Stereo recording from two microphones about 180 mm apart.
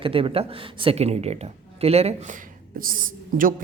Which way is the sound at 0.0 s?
30° right (ahead or behind).